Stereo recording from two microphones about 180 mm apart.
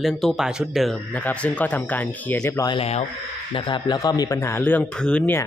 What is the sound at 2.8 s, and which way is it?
Speech, 35° left (ahead or behind).